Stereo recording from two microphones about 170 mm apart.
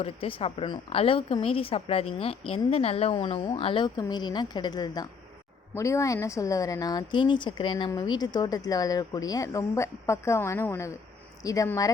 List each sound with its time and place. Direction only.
0.0 s a woman's voice: 35° left (ahead or behind)